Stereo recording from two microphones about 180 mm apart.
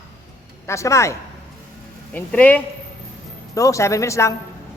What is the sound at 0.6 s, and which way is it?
Speech, 15° left (ahead or behind).